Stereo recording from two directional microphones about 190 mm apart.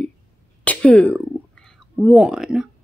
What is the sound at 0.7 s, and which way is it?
Speech, 5° left (ahead or behind).